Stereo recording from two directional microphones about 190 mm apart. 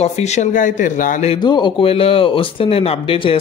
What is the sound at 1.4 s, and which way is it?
Speech, 25° left (ahead or behind).